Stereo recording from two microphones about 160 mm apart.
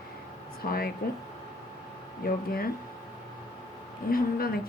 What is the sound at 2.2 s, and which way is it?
Speech, 70° left (ahead or behind).